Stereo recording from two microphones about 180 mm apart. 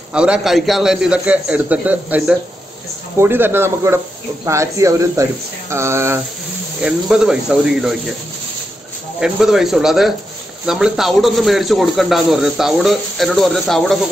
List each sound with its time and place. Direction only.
0.1 s a man's voice: 5° right (ahead or behind)
6.8 s a man's voice: 5° right (ahead or behind)
9.2 s a man's voice: centre (ahead or behind)